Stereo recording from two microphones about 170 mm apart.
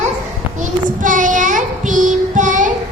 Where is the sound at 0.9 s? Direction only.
50° right (ahead or behind).